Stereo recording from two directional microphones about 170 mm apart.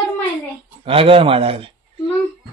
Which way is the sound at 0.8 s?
35° right (ahead or behind).